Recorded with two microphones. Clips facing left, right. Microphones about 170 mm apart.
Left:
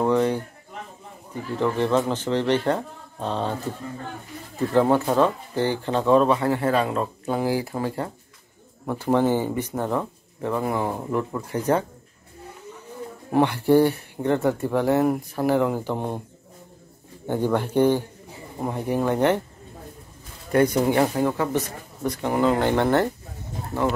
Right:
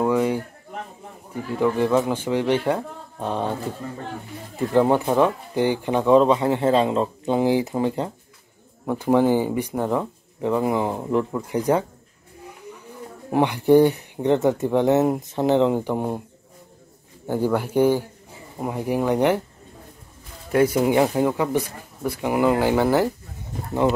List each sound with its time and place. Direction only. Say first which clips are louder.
0.0 s a man's voice: even; 10° right (ahead or behind)
1.6 s speech: right 2 dB; 10° right (ahead or behind)
4.7 s speech: right 1 dB; 15° right (ahead or behind)
12.4 s vehicle: right 1 dB; 15° right (ahead or behind)
13.3 s speech: right 2 dB; 15° right (ahead or behind)
17.3 s speech: right 1 dB; 5° right (ahead or behind)
20.5 s speech: right 1 dB; 5° right (ahead or behind)